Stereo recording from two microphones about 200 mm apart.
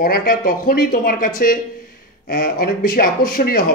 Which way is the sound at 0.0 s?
45° left (ahead or behind).